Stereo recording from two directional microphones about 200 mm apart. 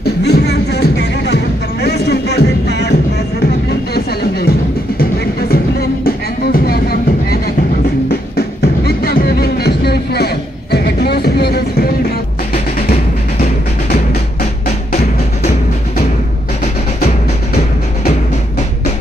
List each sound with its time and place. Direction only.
0.0 s music: 55° left (ahead or behind)
14.9 s music: 35° left (ahead or behind)